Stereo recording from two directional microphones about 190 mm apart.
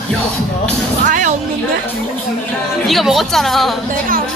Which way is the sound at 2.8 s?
Centre (ahead or behind).